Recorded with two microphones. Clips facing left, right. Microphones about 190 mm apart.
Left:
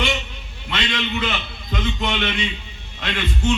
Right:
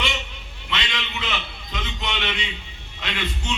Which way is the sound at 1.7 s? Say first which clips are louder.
Left 7 dB; 50° left (ahead or behind).